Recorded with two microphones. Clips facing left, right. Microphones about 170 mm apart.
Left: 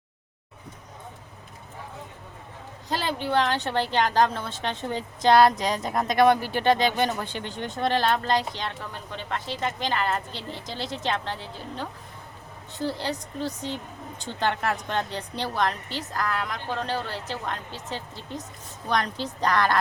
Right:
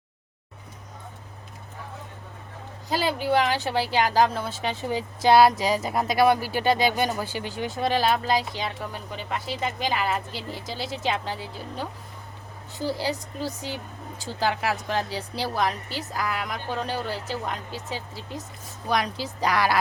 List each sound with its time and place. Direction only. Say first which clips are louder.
2.9 s speech: right 2 dB; 10° right (ahead or behind)